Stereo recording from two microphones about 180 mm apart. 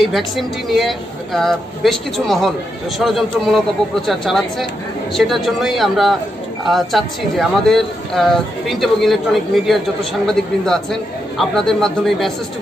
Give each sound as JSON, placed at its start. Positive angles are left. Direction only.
{"t": 0.0, "sound": "speech", "side_deg": 0}